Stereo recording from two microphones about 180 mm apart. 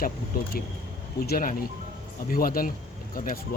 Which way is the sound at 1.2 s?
55° left (ahead or behind).